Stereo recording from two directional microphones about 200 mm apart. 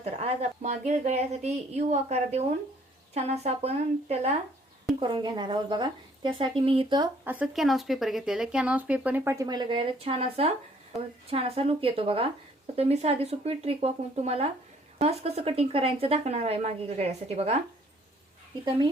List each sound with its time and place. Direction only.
0.0 s speech: 30° right (ahead or behind)
7.3 s speech: 5° right (ahead or behind); by 17.6 s 30° right (ahead or behind)